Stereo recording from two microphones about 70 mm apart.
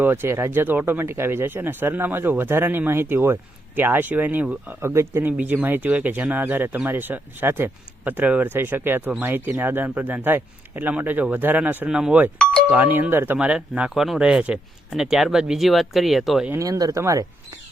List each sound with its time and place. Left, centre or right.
0.0 s speech: right
4.8 s speech: right
5.6 s speech: right
11.9 s speech: centre
12.7 s speech: right
13.4 s speech: centre
13.9 s speech: centre
16.6 s speech: right